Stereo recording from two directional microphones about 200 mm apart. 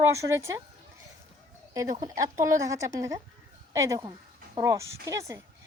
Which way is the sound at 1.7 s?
15° right (ahead or behind).